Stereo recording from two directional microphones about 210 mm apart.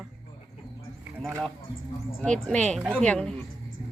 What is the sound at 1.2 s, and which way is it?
Speech, centre (ahead or behind).